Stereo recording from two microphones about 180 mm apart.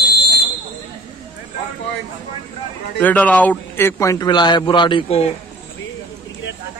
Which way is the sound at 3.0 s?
10° left (ahead or behind).